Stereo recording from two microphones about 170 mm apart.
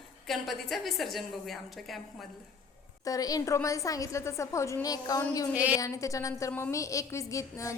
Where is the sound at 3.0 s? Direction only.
20° left (ahead or behind).